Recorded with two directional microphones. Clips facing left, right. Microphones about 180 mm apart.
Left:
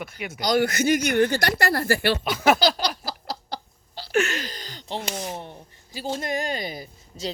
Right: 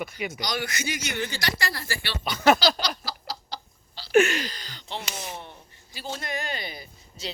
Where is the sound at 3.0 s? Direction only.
55° left (ahead or behind).